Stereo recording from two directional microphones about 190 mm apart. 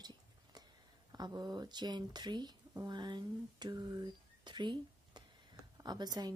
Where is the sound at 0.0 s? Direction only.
20° right (ahead or behind).